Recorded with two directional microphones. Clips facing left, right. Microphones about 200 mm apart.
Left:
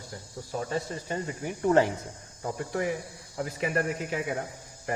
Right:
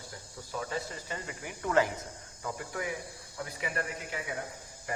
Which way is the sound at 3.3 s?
45° left (ahead or behind).